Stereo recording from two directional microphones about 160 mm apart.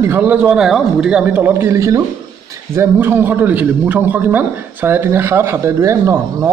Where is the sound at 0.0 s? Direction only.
10° right (ahead or behind).